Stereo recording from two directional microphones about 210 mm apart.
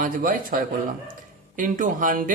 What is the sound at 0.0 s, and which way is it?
Speech, 40° right (ahead or behind).